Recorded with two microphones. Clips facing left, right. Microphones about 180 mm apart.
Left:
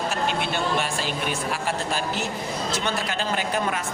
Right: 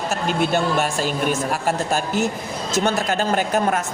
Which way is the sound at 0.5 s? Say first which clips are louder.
Right 5 dB; 45° right (ahead or behind).